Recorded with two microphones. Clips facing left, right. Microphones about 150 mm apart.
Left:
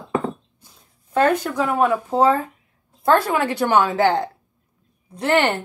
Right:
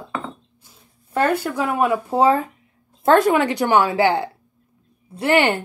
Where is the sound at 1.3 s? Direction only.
10° right (ahead or behind).